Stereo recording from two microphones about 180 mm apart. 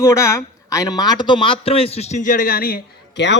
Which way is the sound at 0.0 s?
15° left (ahead or behind).